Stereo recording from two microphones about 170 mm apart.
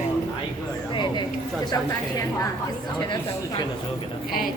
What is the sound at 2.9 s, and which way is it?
Speech, 25° left (ahead or behind).